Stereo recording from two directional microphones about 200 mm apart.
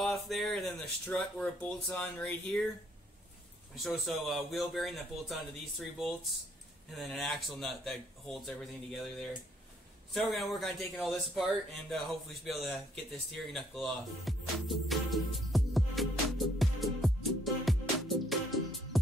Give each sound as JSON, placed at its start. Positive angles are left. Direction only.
{"t": 0.0, "sound": "speech", "side_deg": 0}
{"t": 3.7, "sound": "a man's voice", "side_deg": 0}
{"t": 17.6, "sound": "music", "side_deg": 0}